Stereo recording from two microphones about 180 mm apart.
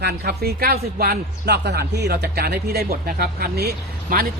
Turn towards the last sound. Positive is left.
turn(degrees=-60)  # may be behind; listen again after turning